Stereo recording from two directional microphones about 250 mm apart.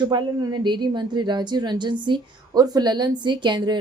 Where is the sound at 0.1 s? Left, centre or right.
Centre.